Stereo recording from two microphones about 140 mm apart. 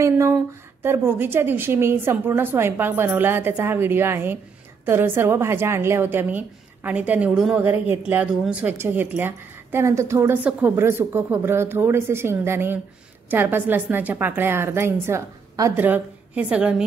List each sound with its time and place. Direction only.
0.0 s a woman's voice: 20° right (ahead or behind)
15.8 s a woman's voice: 10° right (ahead or behind)